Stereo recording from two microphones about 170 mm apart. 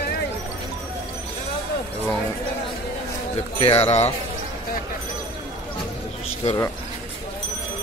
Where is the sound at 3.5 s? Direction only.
35° left (ahead or behind).